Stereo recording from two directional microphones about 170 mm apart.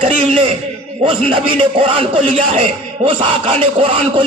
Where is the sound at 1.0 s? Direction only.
30° right (ahead or behind).